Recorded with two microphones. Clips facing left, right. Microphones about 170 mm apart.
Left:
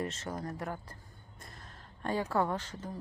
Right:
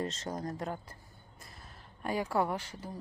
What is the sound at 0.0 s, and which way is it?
Speech, 40° right (ahead or behind).